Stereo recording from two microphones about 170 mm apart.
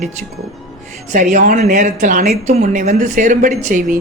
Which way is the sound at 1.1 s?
50° right (ahead or behind).